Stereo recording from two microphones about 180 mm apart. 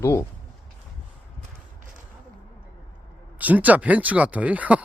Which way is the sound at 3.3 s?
10° right (ahead or behind).